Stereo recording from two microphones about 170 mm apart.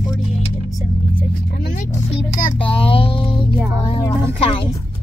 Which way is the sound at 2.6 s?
35° left (ahead or behind).